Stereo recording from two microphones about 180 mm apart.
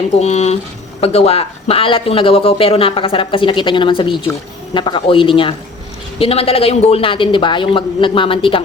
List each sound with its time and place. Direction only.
0.2 s a woman's voice: 35° left (ahead or behind)